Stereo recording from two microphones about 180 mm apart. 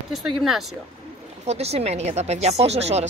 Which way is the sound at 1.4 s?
35° right (ahead or behind).